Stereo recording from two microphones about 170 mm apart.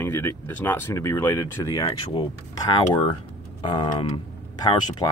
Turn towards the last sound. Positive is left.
turn(degrees=25)  # may be behind; listen again after turning